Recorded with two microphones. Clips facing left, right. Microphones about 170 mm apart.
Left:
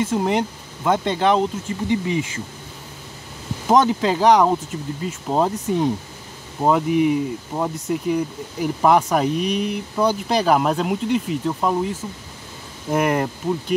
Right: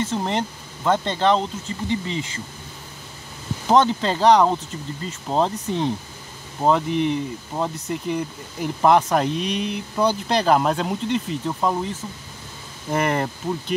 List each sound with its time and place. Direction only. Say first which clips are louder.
0.0 s speech: left 4 dB; 10° left (ahead or behind)
3.6 s speech: left 1 dB; 10° left (ahead or behind)
12.9 s speech: left 2 dB; 5° left (ahead or behind)